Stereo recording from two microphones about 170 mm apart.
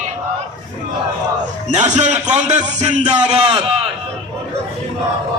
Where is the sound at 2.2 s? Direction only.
45° right (ahead or behind).